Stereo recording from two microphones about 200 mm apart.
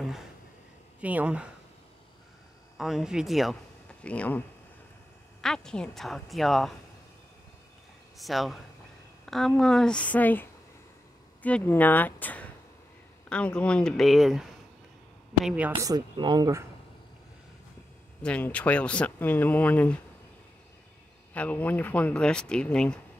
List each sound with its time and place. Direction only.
1.0 s speech: 5° right (ahead or behind)
2.8 s speech: centre (ahead or behind)
5.4 s speech: 5° left (ahead or behind)
8.2 s speech: centre (ahead or behind)
9.2 s a sound: centre (ahead or behind)
9.5 s speech: 5° left (ahead or behind)
15.8 s speech: 20° right (ahead or behind)
18.2 s speech: 5° left (ahead or behind)
21.3 s speech: 5° left (ahead or behind)